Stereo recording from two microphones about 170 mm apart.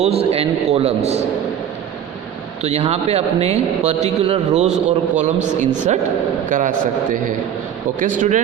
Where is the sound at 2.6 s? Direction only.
40° right (ahead or behind).